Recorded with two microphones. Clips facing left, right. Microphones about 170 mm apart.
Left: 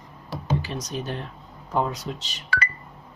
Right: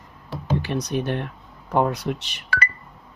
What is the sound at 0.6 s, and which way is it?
Speech, 65° right (ahead or behind).